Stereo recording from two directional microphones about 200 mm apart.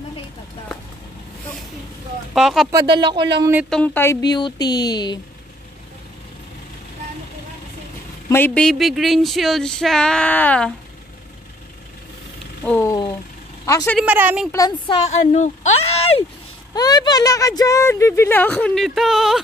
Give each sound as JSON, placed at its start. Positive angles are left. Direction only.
{"t": 2.3, "sound": "speech", "side_deg": 0}
{"t": 2.7, "sound": "speech", "side_deg": -20}
{"t": 3.7, "sound": "speech", "side_deg": 10}
{"t": 8.3, "sound": "speech", "side_deg": 10}
{"t": 12.6, "sound": "speech", "side_deg": 10}
{"t": 13.9, "sound": "speech", "side_deg": -10}
{"t": 14.5, "sound": "speech", "side_deg": 15}
{"t": 15.3, "sound": "speech", "side_deg": 35}
{"t": 15.8, "sound": "a sound", "side_deg": 30}
{"t": 16.7, "sound": "speech", "side_deg": 20}